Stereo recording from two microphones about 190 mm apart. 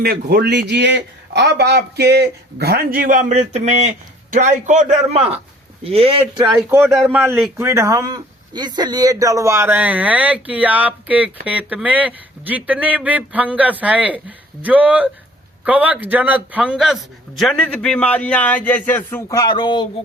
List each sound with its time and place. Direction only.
0.0 s a man's voice: 55° right (ahead or behind); by 6.5 s 25° right (ahead or behind)
6.5 s a man's voice: 5° right (ahead or behind)
7.6 s a man's voice: 15° right (ahead or behind); by 19.9 s 25° left (ahead or behind)